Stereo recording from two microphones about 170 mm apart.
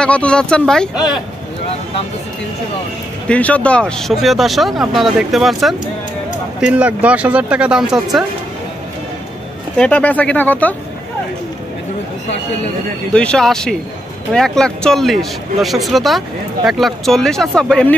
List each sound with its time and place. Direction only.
0.0 s speech: 5° left (ahead or behind)
3.3 s speech: 10° left (ahead or behind)
9.8 s speech: 10° left (ahead or behind)
13.1 s speech: 5° left (ahead or behind)